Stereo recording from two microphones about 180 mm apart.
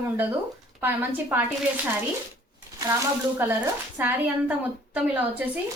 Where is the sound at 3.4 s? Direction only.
10° right (ahead or behind).